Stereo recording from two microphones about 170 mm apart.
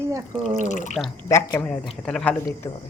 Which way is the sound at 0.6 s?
45° left (ahead or behind).